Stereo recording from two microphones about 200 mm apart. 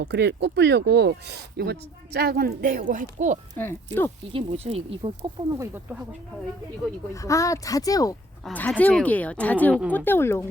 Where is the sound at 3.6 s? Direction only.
10° left (ahead or behind).